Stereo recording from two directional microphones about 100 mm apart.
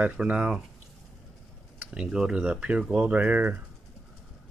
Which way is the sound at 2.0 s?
5° right (ahead or behind).